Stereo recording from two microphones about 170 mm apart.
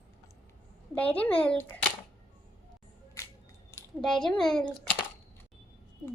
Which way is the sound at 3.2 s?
15° left (ahead or behind).